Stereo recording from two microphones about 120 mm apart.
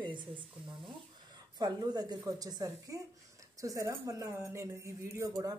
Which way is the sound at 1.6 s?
35° right (ahead or behind).